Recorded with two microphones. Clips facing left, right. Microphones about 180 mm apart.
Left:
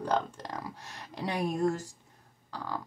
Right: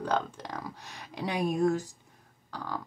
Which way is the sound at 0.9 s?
5° right (ahead or behind).